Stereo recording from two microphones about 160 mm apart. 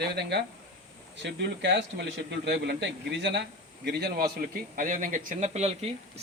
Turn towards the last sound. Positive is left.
turn(degrees=-40)  # may be behind; listen again after turning